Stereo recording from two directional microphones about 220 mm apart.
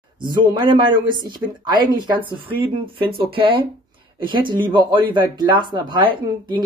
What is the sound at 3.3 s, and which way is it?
Speech, 25° right (ahead or behind).